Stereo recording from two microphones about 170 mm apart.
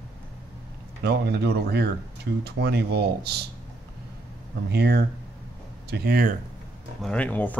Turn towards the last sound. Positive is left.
turn(degrees=10)  # may be behind; listen again after turning